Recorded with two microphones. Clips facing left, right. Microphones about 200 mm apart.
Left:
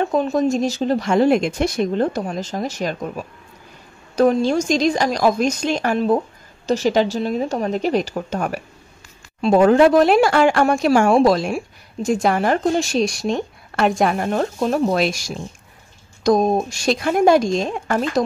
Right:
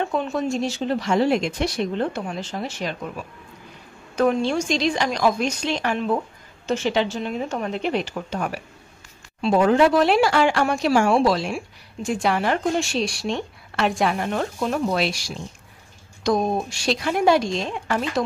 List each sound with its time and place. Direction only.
0.0 s a woman's voice: 40° left (ahead or behind)